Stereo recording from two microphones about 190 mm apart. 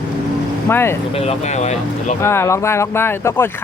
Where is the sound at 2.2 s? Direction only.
15° left (ahead or behind).